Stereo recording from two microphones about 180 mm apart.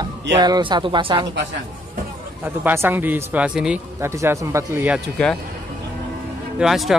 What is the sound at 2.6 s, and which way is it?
Speech, 10° right (ahead or behind).